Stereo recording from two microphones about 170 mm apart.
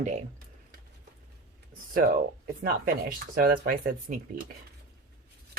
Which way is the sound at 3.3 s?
60° right (ahead or behind).